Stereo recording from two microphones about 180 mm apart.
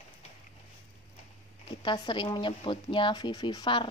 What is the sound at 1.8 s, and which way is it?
Speech, 25° left (ahead or behind).